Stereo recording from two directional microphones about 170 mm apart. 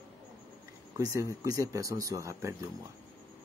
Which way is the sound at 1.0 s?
20° right (ahead or behind).